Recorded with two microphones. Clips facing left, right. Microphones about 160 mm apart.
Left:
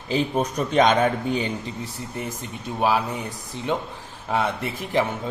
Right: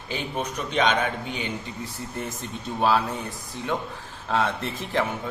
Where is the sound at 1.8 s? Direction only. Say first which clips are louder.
Left 1 dB; 10° left (ahead or behind).